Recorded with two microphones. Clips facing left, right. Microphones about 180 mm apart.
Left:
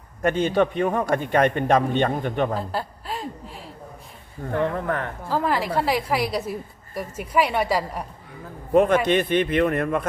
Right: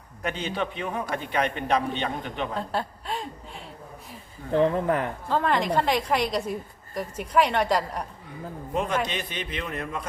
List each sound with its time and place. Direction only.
0.2 s a man's voice: 50° left (ahead or behind)
2.6 s a woman's voice: centre (ahead or behind)
4.5 s speech: 20° right (ahead or behind)
5.3 s a woman's voice: 5° left (ahead or behind)
8.7 s a man's voice: 55° left (ahead or behind)